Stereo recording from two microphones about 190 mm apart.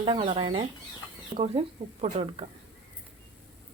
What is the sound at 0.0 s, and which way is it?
Speech, 30° right (ahead or behind).